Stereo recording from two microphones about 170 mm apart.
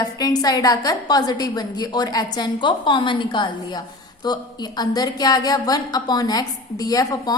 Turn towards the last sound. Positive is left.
turn(degrees=20)  # may be behind; listen again after turning